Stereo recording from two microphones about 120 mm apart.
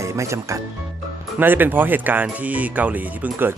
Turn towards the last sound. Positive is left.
turn(degrees=-15)  # may be behind; listen again after turning